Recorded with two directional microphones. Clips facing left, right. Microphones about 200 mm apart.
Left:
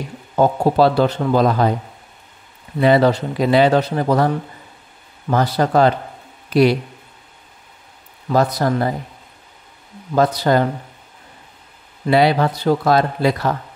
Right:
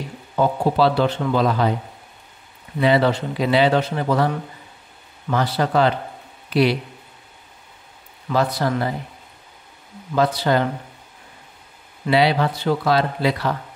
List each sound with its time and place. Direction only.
0.4 s speech: 45° left (ahead or behind)
2.8 s speech: 45° left (ahead or behind)
5.3 s speech: 45° left (ahead or behind)
8.5 s speech: 40° left (ahead or behind)
10.1 s speech: 45° left (ahead or behind)
12.1 s speech: 45° left (ahead or behind)